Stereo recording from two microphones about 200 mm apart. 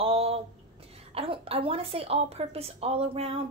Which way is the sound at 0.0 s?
30° right (ahead or behind).